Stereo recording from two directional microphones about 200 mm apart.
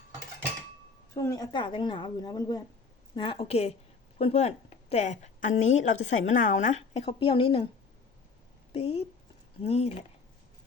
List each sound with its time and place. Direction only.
1.1 s a woman's voice: 15° left (ahead or behind)
8.7 s a woman's voice: 30° left (ahead or behind)